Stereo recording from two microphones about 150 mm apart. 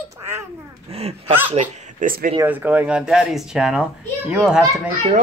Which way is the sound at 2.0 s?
65° right (ahead or behind).